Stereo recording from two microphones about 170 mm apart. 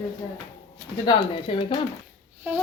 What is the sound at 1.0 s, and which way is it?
Speech, 30° left (ahead or behind).